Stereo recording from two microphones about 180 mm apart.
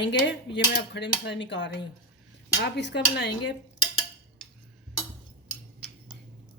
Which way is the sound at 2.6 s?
70° left (ahead or behind).